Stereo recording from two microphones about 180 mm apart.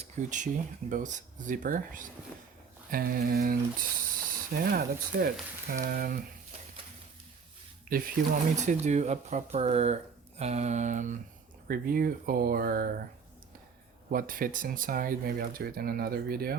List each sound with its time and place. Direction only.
0.0 s speech: 40° right (ahead or behind)
7.9 s speech: 55° right (ahead or behind)
14.1 s speech: 50° right (ahead or behind)